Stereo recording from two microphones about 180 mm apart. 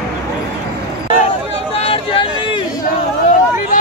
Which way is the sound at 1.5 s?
35° left (ahead or behind).